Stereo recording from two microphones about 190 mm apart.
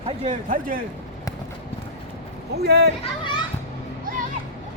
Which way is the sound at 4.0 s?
45° right (ahead or behind).